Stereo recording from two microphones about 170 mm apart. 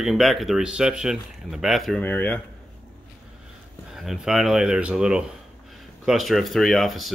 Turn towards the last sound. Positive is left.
turn(degrees=0)  # may be behind; listen again after turning